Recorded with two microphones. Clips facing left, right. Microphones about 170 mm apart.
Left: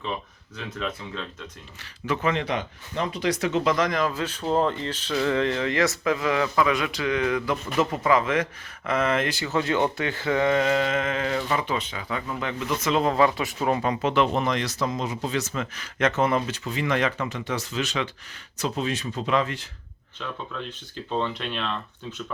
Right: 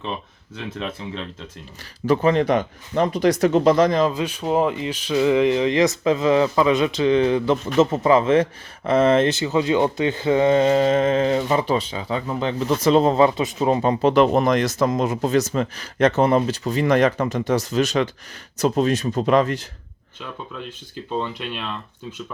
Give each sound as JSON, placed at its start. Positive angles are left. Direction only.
{"t": 0.5, "sound": "speech", "side_deg": -25}
{"t": 2.0, "sound": "speech", "side_deg": -40}
{"t": 20.7, "sound": "speech", "side_deg": -10}